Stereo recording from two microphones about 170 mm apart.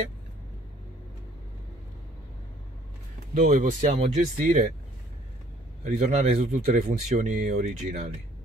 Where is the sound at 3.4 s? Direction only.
50° right (ahead or behind).